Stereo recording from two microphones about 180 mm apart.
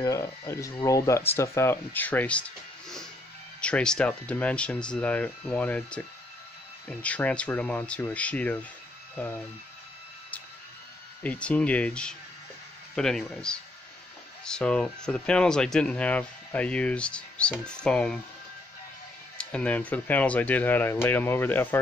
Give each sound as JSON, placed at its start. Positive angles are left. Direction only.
{"t": 0.0, "sound": "speech", "side_deg": 20}
{"t": 3.6, "sound": "speech", "side_deg": 5}
{"t": 11.2, "sound": "speech", "side_deg": 5}
{"t": 19.3, "sound": "speech", "side_deg": 5}